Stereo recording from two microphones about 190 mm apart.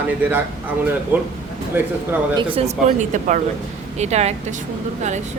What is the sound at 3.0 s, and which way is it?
Speech, 40° right (ahead or behind).